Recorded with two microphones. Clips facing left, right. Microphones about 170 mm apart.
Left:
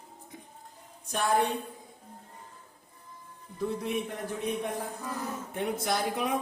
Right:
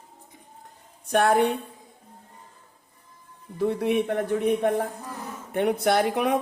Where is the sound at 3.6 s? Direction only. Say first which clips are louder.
Right 8 dB; 70° right (ahead or behind).